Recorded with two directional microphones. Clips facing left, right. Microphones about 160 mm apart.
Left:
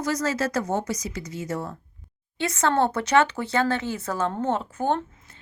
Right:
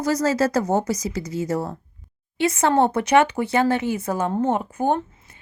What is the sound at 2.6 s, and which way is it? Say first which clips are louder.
Speech: right 3 dB; 20° right (ahead or behind).